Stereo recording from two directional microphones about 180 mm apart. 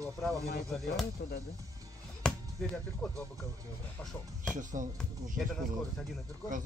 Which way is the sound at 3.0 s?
5° left (ahead or behind).